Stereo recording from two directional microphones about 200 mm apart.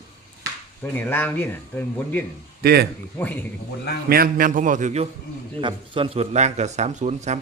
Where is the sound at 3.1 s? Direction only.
10° left (ahead or behind).